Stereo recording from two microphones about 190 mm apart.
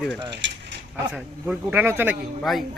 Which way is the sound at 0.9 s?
10° right (ahead or behind).